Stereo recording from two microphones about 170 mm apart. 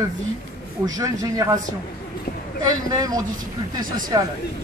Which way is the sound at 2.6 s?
25° right (ahead or behind).